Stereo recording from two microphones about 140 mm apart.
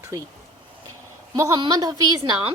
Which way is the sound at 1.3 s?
25° right (ahead or behind).